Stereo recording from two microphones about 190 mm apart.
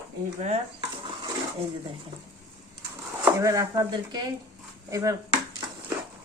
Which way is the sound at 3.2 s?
15° right (ahead or behind).